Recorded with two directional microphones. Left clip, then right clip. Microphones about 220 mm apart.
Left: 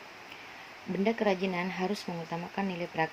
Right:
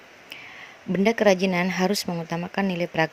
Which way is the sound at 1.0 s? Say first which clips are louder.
Right 9 dB; 50° right (ahead or behind).